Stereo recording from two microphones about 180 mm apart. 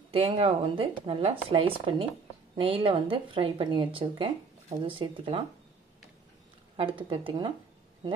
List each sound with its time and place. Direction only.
0.1 s speech: 30° right (ahead or behind)
7.1 s speech: 25° right (ahead or behind)